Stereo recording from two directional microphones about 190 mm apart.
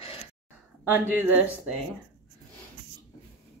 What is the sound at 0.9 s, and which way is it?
Speech, 10° right (ahead or behind).